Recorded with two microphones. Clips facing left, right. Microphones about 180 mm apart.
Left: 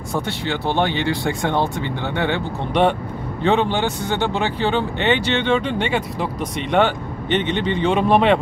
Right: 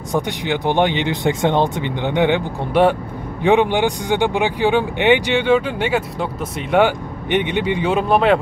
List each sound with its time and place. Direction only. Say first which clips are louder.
0.1 s speech: right 3 dB; 15° right (ahead or behind)